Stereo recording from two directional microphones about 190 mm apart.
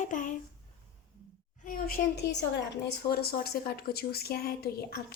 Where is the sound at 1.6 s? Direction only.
50° left (ahead or behind).